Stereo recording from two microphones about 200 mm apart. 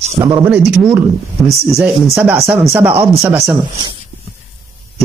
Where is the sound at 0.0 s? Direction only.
35° right (ahead or behind).